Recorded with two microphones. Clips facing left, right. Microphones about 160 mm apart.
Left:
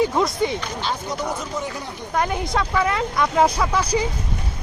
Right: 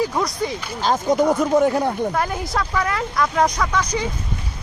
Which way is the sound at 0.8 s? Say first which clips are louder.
Right 8 dB; 45° right (ahead or behind).